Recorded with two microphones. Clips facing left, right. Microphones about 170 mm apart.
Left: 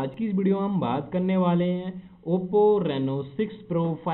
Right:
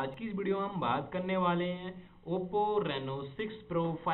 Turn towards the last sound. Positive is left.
turn(degrees=20)  # may be behind; listen again after turning